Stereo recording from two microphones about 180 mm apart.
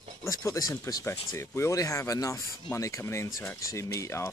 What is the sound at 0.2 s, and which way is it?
Speech, 15° left (ahead or behind).